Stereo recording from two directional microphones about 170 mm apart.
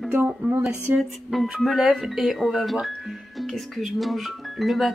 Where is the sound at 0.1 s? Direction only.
10° right (ahead or behind).